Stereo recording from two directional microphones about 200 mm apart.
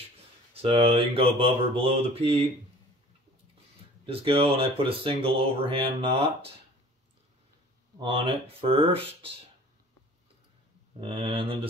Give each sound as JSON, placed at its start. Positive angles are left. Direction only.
{"t": 0.6, "sound": "speech", "side_deg": -30}
{"t": 4.0, "sound": "speech", "side_deg": -25}
{"t": 8.0, "sound": "speech", "side_deg": -25}
{"t": 11.0, "sound": "speech", "side_deg": -25}